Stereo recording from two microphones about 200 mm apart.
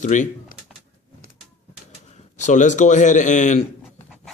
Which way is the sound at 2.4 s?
35° left (ahead or behind).